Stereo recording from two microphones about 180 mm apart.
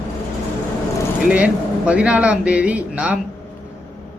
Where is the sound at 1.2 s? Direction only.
5° right (ahead or behind).